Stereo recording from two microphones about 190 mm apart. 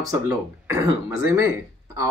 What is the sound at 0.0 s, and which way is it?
Speech, 20° right (ahead or behind).